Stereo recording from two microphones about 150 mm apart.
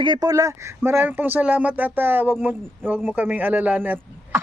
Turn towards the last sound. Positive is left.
turn(degrees=-10)  # may be behind; listen again after turning